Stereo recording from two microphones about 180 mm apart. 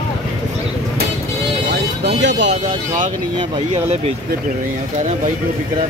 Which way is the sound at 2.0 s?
75° right (ahead or behind).